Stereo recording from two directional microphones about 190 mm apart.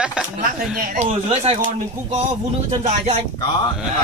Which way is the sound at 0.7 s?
50° right (ahead or behind).